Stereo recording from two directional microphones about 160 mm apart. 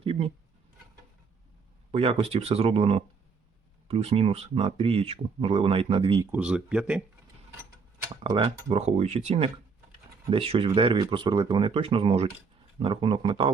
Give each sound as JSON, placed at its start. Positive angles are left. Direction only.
{"t": 0.0, "sound": "a sound", "side_deg": -35}
{"t": 1.9, "sound": "speech", "side_deg": -40}
{"t": 6.3, "sound": "speech", "side_deg": -5}
{"t": 8.1, "sound": "speech", "side_deg": -30}